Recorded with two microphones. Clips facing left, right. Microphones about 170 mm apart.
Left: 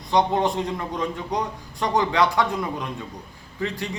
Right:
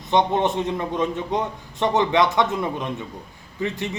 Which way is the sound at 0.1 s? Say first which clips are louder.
Right 1 dB; 20° right (ahead or behind).